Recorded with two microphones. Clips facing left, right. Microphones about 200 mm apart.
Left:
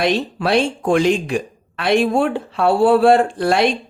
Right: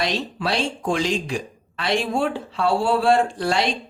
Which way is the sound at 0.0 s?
55° left (ahead or behind).